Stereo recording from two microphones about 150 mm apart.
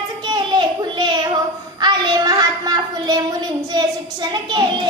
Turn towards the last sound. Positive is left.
turn(degrees=-30)  # may be behind; listen again after turning